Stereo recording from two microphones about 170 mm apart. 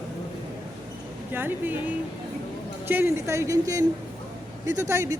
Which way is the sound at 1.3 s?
10° right (ahead or behind).